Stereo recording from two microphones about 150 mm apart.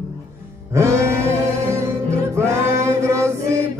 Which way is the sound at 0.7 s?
15° right (ahead or behind).